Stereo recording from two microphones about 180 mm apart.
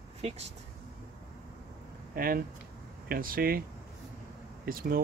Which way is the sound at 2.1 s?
55° right (ahead or behind).